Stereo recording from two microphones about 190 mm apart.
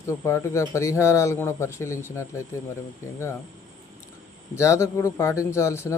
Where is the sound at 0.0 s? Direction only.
15° left (ahead or behind).